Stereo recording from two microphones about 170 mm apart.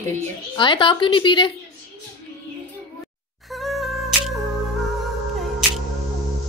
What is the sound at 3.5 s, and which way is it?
Music, centre (ahead or behind).